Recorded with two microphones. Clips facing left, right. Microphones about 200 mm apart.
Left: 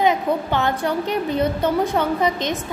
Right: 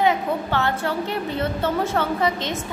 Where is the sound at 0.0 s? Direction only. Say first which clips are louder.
Left 2 dB; 15° left (ahead or behind).